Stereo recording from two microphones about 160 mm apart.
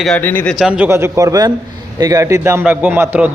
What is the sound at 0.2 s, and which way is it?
Speech, 10° left (ahead or behind).